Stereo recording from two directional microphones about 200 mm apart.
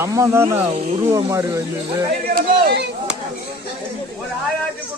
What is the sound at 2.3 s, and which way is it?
Speech, 55° right (ahead or behind).